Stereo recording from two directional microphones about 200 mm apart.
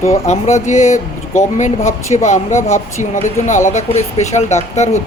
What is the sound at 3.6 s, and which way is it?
Speech, 35° left (ahead or behind).